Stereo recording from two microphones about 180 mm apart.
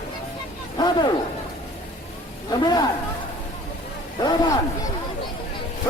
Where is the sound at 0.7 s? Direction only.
25° left (ahead or behind).